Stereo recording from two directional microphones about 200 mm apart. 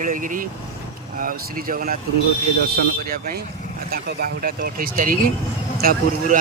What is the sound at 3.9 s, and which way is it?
Speech, 50° right (ahead or behind).